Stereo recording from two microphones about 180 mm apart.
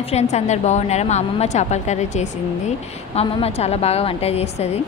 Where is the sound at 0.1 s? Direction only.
40° left (ahead or behind).